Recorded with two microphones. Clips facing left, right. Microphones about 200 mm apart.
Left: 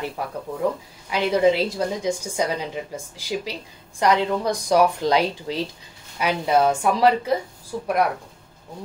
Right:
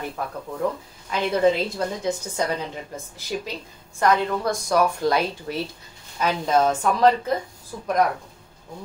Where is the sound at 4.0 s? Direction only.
15° left (ahead or behind).